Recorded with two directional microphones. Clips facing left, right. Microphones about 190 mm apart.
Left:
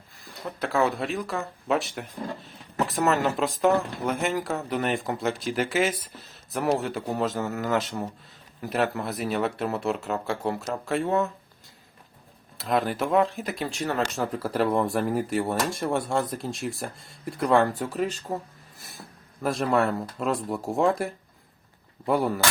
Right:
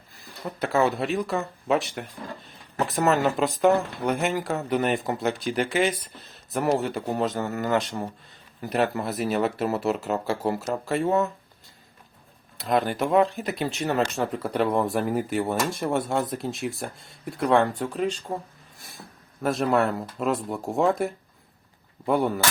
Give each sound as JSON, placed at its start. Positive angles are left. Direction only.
{"t": 0.6, "sound": "speech", "side_deg": 0}
{"t": 12.5, "sound": "speech", "side_deg": 0}
{"t": 13.8, "sound": "speech", "side_deg": -20}
{"t": 14.2, "sound": "speech", "side_deg": 0}